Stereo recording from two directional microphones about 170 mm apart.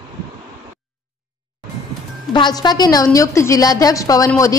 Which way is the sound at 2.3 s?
25° left (ahead or behind).